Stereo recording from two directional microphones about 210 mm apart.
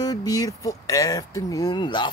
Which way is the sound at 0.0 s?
15° left (ahead or behind).